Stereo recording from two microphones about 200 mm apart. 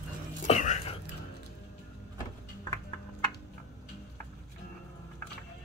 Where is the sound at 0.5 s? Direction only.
35° left (ahead or behind).